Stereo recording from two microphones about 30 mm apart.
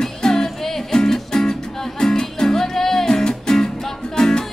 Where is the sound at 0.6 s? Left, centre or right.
Centre.